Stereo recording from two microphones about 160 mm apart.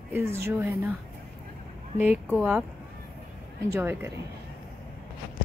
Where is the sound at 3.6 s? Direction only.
15° right (ahead or behind).